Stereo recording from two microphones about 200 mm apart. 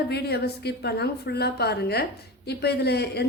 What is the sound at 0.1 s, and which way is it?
A woman's voice, 55° left (ahead or behind).